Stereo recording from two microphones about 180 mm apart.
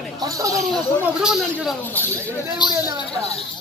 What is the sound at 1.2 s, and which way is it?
Speech, 5° right (ahead or behind).